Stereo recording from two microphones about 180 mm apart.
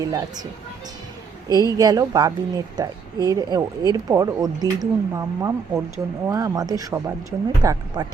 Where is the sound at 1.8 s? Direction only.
20° right (ahead or behind).